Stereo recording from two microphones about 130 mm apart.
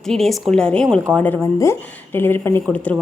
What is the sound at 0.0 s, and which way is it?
A woman's voice, 5° left (ahead or behind).